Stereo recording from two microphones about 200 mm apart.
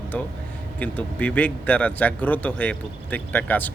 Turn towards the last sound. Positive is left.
turn(degrees=10)  # may be behind; listen again after turning